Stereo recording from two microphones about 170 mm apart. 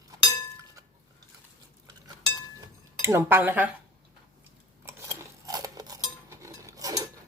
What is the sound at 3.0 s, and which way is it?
Speech, 15° right (ahead or behind).